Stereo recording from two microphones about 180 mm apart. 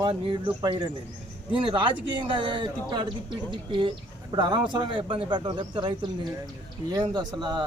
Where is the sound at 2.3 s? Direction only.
25° right (ahead or behind).